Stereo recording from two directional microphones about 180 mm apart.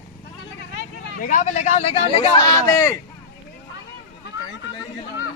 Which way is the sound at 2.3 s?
15° left (ahead or behind).